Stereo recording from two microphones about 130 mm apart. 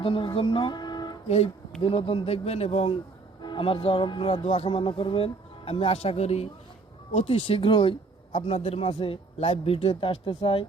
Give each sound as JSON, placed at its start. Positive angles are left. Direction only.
{"t": 0.0, "sound": "speech", "side_deg": 40}
{"t": 1.8, "sound": "speech", "side_deg": 45}